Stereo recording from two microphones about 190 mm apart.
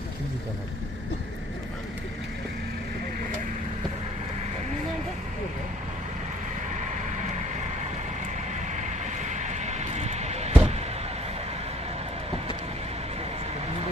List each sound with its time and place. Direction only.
6.8 s vehicle: 40° right (ahead or behind)
8.7 s vehicle: 40° right (ahead or behind)